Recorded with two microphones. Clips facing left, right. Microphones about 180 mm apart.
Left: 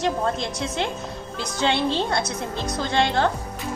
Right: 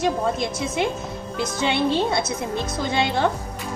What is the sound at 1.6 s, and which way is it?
Speech, 10° right (ahead or behind).